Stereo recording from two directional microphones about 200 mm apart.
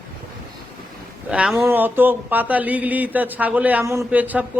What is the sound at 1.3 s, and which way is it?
A man's voice, 5° right (ahead or behind).